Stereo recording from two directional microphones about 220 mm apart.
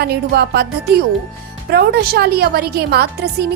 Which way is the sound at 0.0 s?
45° right (ahead or behind).